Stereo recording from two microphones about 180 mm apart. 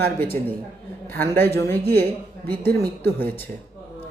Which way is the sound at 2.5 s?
55° right (ahead or behind).